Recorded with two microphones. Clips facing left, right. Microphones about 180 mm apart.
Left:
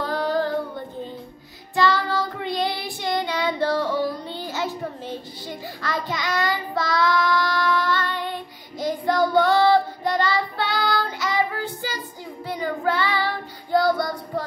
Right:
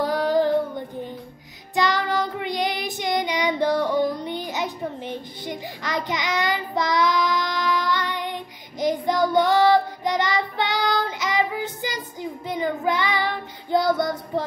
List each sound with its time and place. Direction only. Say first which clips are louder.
0.0 s child singing: right 3 dB; 15° right (ahead or behind)